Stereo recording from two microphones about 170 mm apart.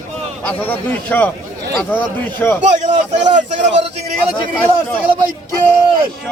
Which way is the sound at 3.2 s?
45° right (ahead or behind).